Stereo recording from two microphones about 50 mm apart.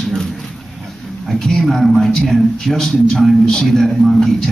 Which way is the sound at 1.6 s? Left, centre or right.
Centre.